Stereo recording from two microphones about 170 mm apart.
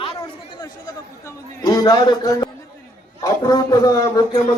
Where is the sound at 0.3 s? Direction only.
25° left (ahead or behind).